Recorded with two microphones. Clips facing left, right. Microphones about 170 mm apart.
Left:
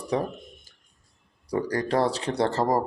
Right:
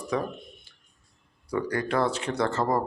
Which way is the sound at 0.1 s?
35° left (ahead or behind).